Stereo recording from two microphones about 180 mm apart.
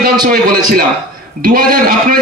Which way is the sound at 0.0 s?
55° right (ahead or behind).